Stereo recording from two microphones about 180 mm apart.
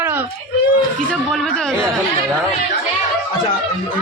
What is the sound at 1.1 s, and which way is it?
Speech, centre (ahead or behind).